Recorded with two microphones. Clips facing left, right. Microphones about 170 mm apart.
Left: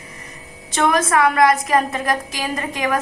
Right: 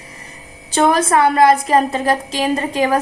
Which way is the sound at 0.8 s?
30° right (ahead or behind).